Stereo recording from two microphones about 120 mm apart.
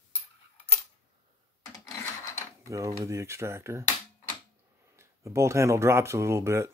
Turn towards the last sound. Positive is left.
turn(degrees=-25)  # may be behind; listen again after turning